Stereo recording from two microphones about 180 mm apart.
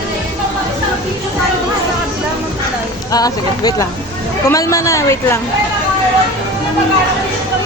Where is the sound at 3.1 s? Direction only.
20° left (ahead or behind).